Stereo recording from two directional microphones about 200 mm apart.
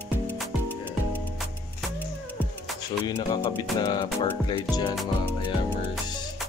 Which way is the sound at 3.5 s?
20° left (ahead or behind).